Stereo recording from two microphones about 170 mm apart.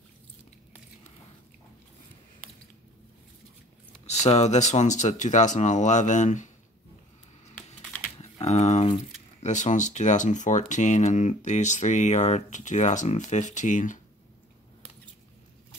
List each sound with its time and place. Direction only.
4.0 s speech: 40° left (ahead or behind)
8.2 s a sound: 40° left (ahead or behind)
9.4 s speech: 45° left (ahead or behind)